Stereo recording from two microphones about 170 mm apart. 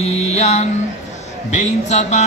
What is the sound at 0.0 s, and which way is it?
Mantra, 40° left (ahead or behind).